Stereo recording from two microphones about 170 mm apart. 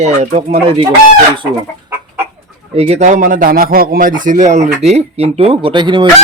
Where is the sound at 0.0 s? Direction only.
40° right (ahead or behind).